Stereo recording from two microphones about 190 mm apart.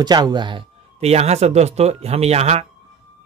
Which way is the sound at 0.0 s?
20° right (ahead or behind).